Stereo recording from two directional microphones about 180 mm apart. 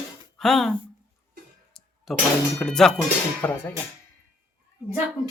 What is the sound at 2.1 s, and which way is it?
Speech, centre (ahead or behind).